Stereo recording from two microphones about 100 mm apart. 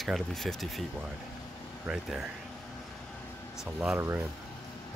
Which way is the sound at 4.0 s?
25° right (ahead or behind).